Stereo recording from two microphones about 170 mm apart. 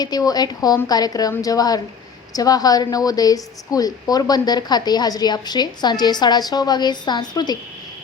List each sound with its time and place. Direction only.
0.0 s a woman's voice: 25° left (ahead or behind)